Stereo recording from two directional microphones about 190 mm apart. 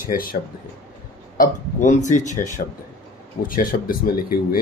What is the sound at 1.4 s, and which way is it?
Speech, 40° left (ahead or behind).